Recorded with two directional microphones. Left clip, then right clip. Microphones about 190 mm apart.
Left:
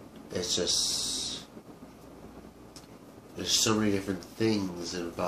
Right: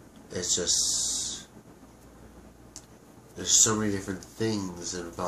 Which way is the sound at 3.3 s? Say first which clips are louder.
Right 2 dB; 5° right (ahead or behind).